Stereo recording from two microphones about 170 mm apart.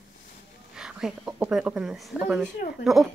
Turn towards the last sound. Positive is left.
turn(degrees=0)  # may be behind; listen again after turning